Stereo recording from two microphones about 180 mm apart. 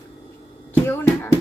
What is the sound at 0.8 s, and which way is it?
Speech, 10° left (ahead or behind).